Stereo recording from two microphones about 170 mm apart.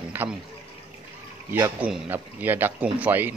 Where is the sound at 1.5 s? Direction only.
15° right (ahead or behind).